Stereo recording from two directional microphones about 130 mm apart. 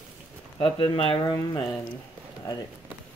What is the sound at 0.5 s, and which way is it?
Speech, 45° left (ahead or behind).